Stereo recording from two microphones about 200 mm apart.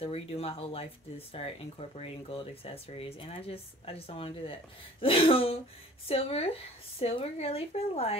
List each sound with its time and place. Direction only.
0.0 s speech: 30° left (ahead or behind)